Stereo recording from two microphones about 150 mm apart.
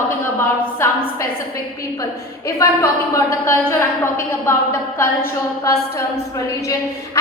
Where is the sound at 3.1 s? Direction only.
15° left (ahead or behind).